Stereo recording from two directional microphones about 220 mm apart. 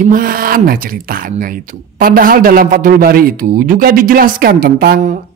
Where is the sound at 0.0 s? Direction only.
40° right (ahead or behind).